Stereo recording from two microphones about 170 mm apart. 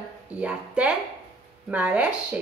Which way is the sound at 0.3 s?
5° right (ahead or behind).